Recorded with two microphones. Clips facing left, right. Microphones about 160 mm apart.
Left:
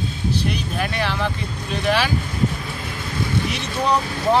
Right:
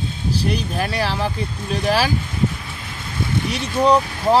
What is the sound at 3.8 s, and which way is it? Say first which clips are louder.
Speech: right 4 dB; 30° right (ahead or behind).